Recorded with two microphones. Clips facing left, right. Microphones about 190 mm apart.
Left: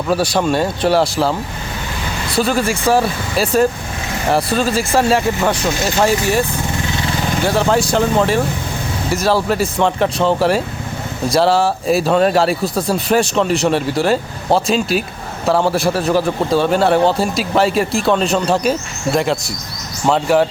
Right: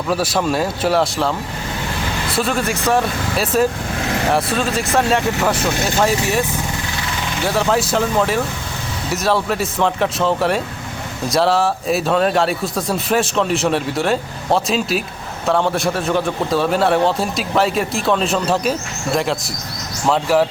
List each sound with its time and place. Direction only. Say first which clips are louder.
0.1 s a man's voice: left 3 dB; centre (ahead or behind)
7.4 s a man's voice: left 2 dB; centre (ahead or behind)